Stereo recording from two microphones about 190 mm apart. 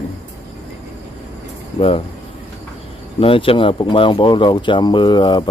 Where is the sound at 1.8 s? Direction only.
30° left (ahead or behind).